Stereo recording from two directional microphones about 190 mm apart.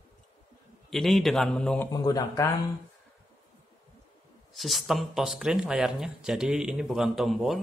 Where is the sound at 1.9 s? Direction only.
20° left (ahead or behind).